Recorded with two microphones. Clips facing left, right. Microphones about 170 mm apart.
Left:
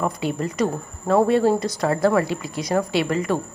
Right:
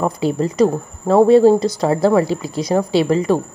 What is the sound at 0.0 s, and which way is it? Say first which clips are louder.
A woman's voice: right 6 dB; 35° right (ahead or behind).